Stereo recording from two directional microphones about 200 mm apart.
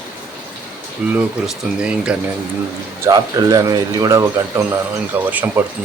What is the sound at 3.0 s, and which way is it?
Speech, 15° right (ahead or behind).